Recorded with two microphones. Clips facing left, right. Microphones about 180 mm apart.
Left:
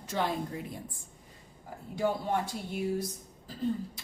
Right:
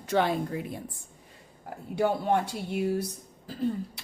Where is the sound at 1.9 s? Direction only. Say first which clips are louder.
Right 4 dB; 70° right (ahead or behind).